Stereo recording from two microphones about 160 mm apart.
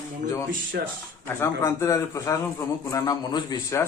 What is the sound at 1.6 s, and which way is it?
A man's voice, 20° left (ahead or behind).